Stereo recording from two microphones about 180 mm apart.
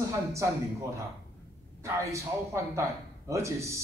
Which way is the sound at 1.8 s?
15° right (ahead or behind).